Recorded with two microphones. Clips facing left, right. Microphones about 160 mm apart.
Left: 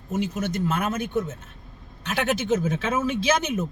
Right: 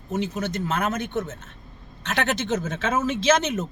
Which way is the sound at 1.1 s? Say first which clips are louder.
Left 2 dB; 75° right (ahead or behind).